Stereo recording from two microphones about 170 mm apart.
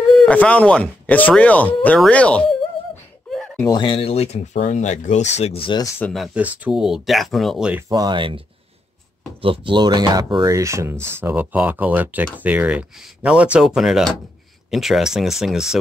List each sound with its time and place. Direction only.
0.1 s speech: 5° left (ahead or behind)
3.3 s a sound: 5° left (ahead or behind)
3.6 s speech: 25° left (ahead or behind)
5.9 s speech: 5° left (ahead or behind)
7.9 s speech: 25° right (ahead or behind); by 15.8 s 5° right (ahead or behind)